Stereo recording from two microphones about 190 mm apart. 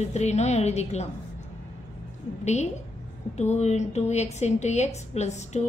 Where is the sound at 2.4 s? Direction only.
35° left (ahead or behind).